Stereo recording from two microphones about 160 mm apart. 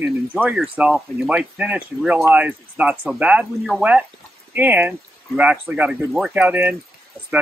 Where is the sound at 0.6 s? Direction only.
5° right (ahead or behind).